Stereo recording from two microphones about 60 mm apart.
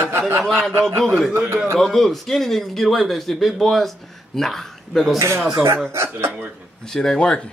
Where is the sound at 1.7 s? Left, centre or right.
Centre.